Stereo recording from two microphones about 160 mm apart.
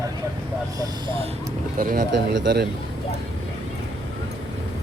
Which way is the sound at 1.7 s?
75° right (ahead or behind).